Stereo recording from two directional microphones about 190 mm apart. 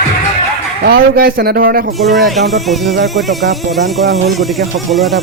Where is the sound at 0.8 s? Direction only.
55° right (ahead or behind).